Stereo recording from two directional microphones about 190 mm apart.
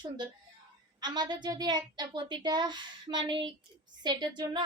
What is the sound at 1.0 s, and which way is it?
A woman's voice, 20° right (ahead or behind).